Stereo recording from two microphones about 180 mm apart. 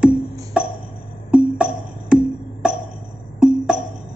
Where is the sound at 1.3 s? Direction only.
5° right (ahead or behind).